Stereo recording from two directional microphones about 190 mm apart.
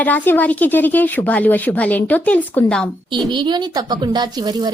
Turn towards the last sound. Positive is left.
turn(degrees=-20)  # may be behind; listen again after turning